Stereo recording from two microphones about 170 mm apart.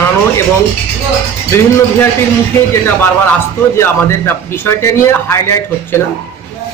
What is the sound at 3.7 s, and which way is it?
A man's voice, 15° left (ahead or behind).